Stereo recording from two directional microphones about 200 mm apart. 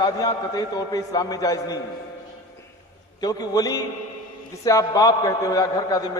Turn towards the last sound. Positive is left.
turn(degrees=20)  # may be behind; listen again after turning